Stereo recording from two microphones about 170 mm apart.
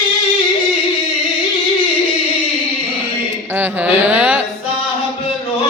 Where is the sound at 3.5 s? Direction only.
10° right (ahead or behind).